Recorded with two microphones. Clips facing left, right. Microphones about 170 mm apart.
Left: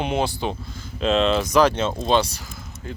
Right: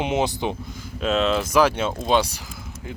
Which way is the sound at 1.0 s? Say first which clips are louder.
Left 2 dB; 5° right (ahead or behind).